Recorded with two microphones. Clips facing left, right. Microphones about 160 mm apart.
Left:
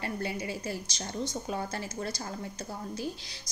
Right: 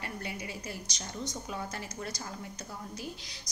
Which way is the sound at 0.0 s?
30° left (ahead or behind).